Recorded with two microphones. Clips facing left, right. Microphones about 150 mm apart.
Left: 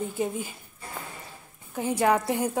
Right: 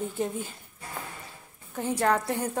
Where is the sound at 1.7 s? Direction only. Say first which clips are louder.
Left 2 dB; 5° left (ahead or behind).